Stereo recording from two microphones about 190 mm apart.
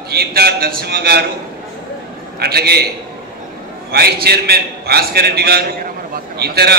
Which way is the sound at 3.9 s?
55° right (ahead or behind).